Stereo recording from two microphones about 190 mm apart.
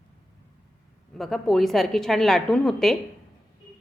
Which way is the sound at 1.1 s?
Centre (ahead or behind).